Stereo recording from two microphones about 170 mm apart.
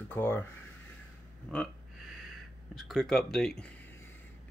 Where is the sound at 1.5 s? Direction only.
Centre (ahead or behind).